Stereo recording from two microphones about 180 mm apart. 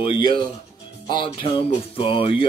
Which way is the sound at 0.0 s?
30° left (ahead or behind).